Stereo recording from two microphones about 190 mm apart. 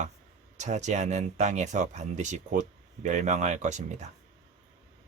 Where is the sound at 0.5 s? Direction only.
40° right (ahead or behind).